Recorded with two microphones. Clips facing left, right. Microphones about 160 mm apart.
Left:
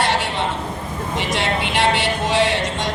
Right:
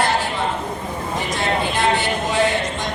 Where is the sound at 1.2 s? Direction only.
75° left (ahead or behind).